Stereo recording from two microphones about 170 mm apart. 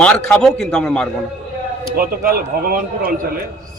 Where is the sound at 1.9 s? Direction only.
60° right (ahead or behind).